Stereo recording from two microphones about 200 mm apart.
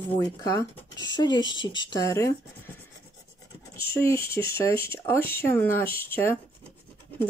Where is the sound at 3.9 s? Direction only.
10° left (ahead or behind).